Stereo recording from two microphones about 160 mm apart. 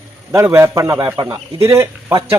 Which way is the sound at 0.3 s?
15° right (ahead or behind).